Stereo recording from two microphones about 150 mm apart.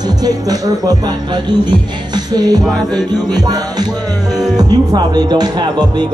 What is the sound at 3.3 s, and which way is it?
Speech, 25° right (ahead or behind).